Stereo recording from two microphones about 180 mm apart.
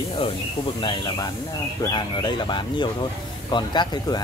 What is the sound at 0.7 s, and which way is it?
A man's voice, 25° left (ahead or behind).